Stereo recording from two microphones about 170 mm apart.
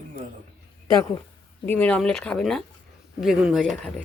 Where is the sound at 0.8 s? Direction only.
20° left (ahead or behind).